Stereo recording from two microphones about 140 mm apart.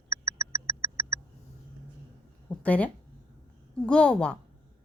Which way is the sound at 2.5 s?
10° left (ahead or behind).